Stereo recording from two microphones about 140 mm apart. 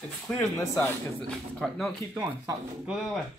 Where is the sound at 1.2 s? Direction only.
Centre (ahead or behind).